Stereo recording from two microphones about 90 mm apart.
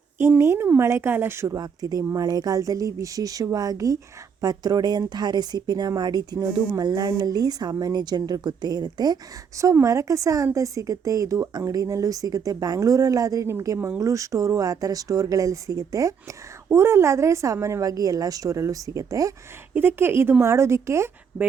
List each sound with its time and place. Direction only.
0.2 s speech: 25° right (ahead or behind)
1.5 s a woman's voice: 45° right (ahead or behind)
9.8 s a woman's voice: 35° right (ahead or behind)
19.7 s a woman's voice: 25° right (ahead or behind)